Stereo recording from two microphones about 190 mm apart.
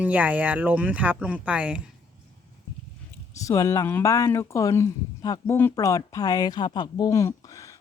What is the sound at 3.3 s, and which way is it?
Speech, 15° left (ahead or behind).